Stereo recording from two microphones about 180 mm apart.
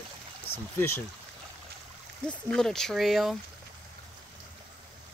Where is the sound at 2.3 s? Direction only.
5° left (ahead or behind).